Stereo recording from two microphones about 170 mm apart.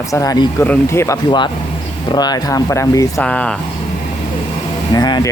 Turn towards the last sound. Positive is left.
turn(degrees=25)  # may be behind; listen again after turning